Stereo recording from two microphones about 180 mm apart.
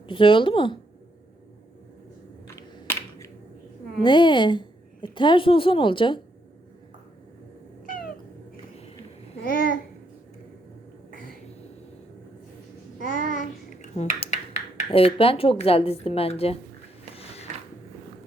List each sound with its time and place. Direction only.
0.1 s a woman's voice: 30° left (ahead or behind)
2.6 s computer keyboard: 15° left (ahead or behind)
4.0 s a woman's voice: 25° left (ahead or behind)
9.4 s a child's voice: 50° left (ahead or behind)
13.0 s babbling: 50° left (ahead or behind)
13.9 s speech: 40° left (ahead or behind)
17.2 s a sound: 35° left (ahead or behind)